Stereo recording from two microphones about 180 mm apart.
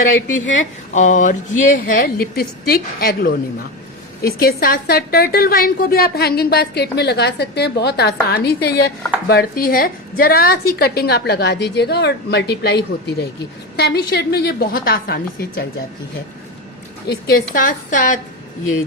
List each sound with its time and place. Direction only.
0.9 s a woman's voice: 45° left (ahead or behind)
17.1 s a woman's voice: 60° left (ahead or behind)